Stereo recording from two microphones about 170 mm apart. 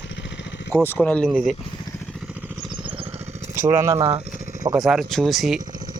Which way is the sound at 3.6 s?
15° right (ahead or behind).